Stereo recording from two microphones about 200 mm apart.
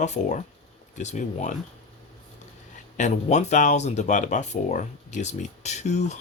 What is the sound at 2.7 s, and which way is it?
Speech, 35° left (ahead or behind).